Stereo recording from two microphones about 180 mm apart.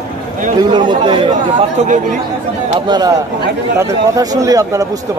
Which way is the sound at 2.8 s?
25° right (ahead or behind).